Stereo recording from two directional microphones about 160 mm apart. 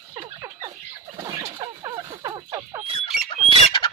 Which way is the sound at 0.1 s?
20° right (ahead or behind).